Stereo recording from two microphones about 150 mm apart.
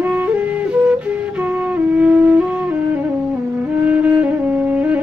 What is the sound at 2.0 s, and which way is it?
Music, 10° right (ahead or behind).